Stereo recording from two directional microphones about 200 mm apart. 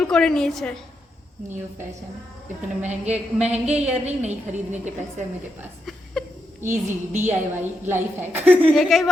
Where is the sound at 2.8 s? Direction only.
35° right (ahead or behind).